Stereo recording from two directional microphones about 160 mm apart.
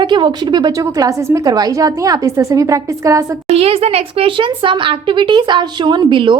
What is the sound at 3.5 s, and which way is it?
Speech, 40° right (ahead or behind).